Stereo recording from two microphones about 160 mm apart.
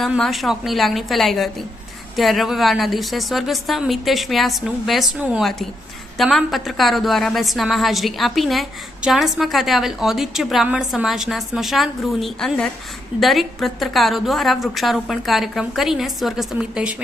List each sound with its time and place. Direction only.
0.0 s a woman's voice: centre (ahead or behind)